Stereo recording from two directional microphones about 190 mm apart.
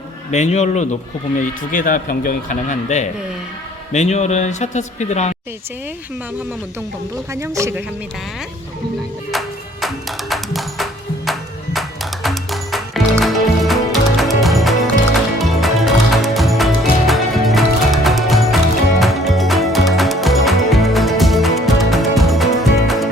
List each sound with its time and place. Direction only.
0.3 s a man's voice: 35° left (ahead or behind)
7.3 s speech: 15° right (ahead or behind)
9.8 s music: centre (ahead or behind)